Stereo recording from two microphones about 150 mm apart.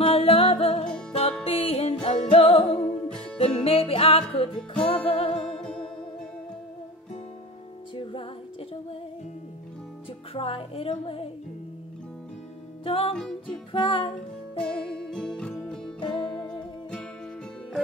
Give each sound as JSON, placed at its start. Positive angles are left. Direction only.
{"t": 0.0, "sound": "music", "side_deg": 40}
{"t": 4.6, "sound": "music", "side_deg": 5}
{"t": 5.0, "sound": "music", "side_deg": 40}
{"t": 5.3, "sound": "music", "side_deg": 5}
{"t": 7.9, "sound": "music", "side_deg": 35}
{"t": 10.3, "sound": "music", "side_deg": 40}
{"t": 12.8, "sound": "music", "side_deg": 35}
{"t": 14.6, "sound": "music", "side_deg": 5}
{"t": 16.0, "sound": "music", "side_deg": 35}